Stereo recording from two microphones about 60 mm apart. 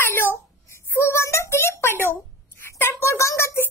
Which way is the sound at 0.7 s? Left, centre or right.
Left.